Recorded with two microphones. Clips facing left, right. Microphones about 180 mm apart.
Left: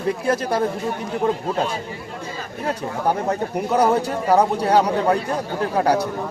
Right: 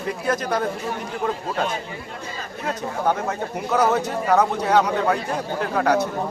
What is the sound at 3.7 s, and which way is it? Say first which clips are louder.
A man's voice: left 1 dB; 35° left (ahead or behind).